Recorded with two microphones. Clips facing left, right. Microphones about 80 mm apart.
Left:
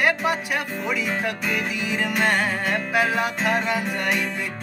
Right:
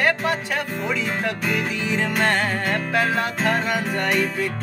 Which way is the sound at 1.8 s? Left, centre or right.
Centre.